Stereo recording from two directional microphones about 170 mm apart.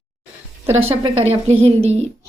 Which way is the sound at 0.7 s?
35° right (ahead or behind).